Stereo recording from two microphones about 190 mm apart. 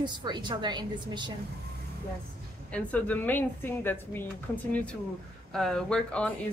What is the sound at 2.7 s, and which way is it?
Speech, 10° left (ahead or behind).